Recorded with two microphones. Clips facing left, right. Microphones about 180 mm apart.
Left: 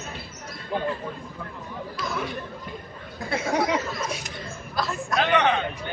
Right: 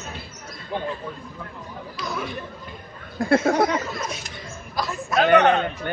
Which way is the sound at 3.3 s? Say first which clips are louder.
Right 6 dB; 55° right (ahead or behind).